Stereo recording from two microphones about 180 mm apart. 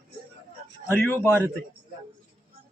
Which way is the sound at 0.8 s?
10° left (ahead or behind).